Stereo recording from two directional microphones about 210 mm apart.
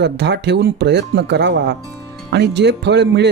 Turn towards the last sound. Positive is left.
turn(degrees=-55)  # may be behind; listen again after turning